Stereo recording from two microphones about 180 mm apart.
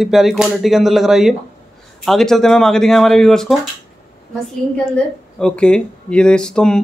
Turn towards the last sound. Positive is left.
turn(degrees=5)  # may be behind; listen again after turning